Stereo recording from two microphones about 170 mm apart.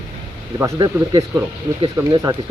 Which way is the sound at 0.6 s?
25° right (ahead or behind).